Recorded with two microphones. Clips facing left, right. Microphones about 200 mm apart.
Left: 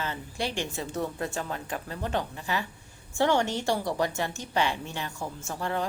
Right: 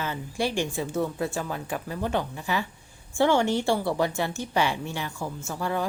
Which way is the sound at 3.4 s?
20° left (ahead or behind).